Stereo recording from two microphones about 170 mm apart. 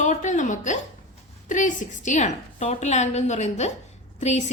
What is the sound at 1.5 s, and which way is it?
A woman's voice, 50° left (ahead or behind).